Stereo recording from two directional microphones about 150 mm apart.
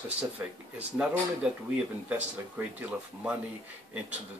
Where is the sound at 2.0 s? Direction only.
10° right (ahead or behind).